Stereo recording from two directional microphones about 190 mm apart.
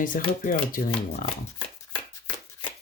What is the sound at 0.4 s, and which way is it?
Speech, 50° left (ahead or behind).